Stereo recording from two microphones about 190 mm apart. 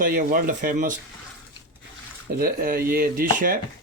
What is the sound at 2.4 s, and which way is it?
Speech, 50° right (ahead or behind).